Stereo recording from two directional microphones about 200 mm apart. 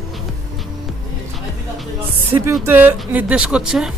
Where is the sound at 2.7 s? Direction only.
10° right (ahead or behind).